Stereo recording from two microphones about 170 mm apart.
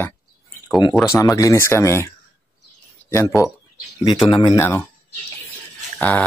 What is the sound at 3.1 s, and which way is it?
Speech, 15° left (ahead or behind).